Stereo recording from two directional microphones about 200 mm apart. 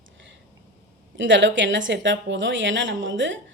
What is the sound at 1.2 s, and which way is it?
A woman's voice, 65° right (ahead or behind).